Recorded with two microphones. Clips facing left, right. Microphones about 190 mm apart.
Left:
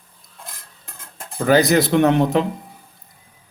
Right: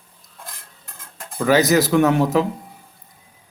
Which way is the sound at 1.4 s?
35° left (ahead or behind).